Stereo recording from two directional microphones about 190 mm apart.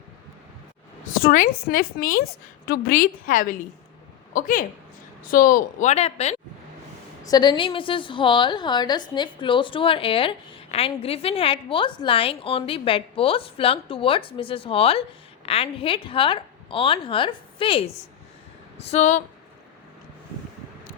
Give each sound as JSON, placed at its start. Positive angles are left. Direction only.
{"t": 1.2, "sound": "a woman's voice", "side_deg": 45}
{"t": 2.2, "sound": "a woman's voice", "side_deg": 90}
{"t": 2.8, "sound": "a woman's voice", "side_deg": 50}
{"t": 7.3, "sound": "a woman's voice", "side_deg": 20}